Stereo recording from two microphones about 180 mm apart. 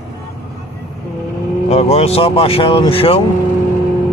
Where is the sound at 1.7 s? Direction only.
35° left (ahead or behind).